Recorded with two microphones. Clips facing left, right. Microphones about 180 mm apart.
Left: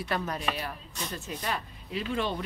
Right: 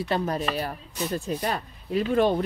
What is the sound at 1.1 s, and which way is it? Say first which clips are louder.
Speech: right 6 dB; 35° right (ahead or behind).